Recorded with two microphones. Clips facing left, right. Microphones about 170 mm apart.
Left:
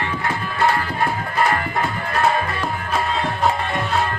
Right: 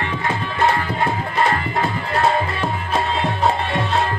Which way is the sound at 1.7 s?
25° right (ahead or behind).